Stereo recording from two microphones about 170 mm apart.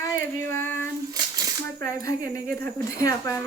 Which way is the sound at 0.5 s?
15° left (ahead or behind).